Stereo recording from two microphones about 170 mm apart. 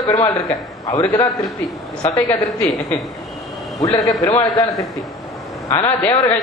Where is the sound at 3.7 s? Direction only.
20° left (ahead or behind).